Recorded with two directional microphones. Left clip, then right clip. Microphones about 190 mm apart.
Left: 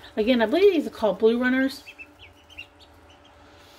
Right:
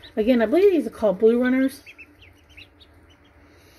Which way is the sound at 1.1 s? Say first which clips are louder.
Right 3 dB; 10° right (ahead or behind).